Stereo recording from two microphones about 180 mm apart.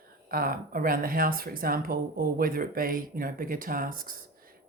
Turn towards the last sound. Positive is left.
turn(degrees=-50)  # may be behind; listen again after turning